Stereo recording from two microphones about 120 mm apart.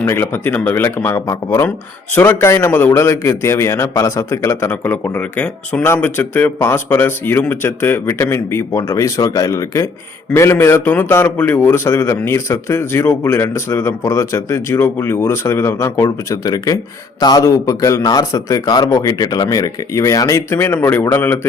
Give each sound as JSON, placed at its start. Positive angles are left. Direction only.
{"t": 0.0, "sound": "a man's voice", "side_deg": 20}